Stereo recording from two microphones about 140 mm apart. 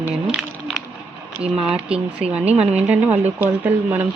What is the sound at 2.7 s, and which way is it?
Speech, 10° right (ahead or behind).